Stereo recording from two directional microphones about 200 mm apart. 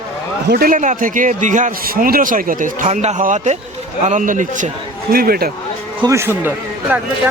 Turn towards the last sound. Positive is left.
turn(degrees=-10)  # may be behind; listen again after turning